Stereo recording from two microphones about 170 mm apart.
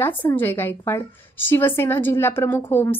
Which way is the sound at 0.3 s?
15° left (ahead or behind).